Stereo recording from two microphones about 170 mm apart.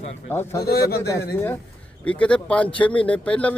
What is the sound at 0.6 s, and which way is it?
Speech, 65° left (ahead or behind).